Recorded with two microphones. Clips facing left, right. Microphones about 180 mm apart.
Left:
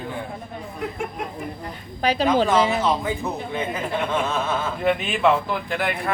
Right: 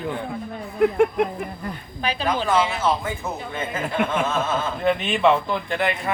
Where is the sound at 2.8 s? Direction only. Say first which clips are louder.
Left 1 dB; 15° left (ahead or behind).